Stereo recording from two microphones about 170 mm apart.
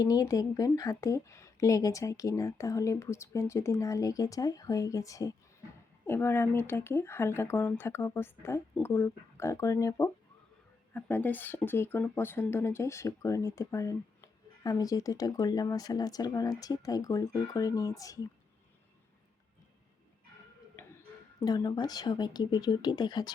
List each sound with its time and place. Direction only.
0.0 s speech: 20° left (ahead or behind)
21.4 s speech: 20° left (ahead or behind)